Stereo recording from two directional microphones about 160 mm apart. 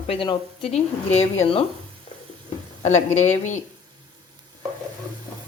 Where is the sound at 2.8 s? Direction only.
45° left (ahead or behind).